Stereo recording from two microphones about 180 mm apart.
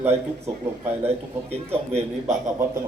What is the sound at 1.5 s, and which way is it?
Speech, 35° right (ahead or behind).